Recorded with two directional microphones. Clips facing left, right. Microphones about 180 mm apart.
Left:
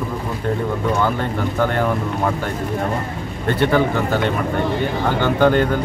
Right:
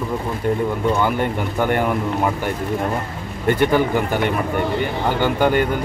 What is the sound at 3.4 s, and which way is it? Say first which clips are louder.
Speech: even; 15° right (ahead or behind).